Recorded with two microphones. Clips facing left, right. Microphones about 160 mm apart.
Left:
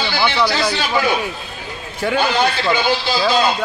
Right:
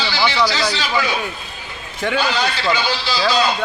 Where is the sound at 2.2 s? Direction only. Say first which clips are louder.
Left 5 dB; 50° left (ahead or behind).